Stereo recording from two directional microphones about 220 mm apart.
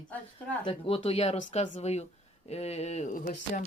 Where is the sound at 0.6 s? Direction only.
25° left (ahead or behind).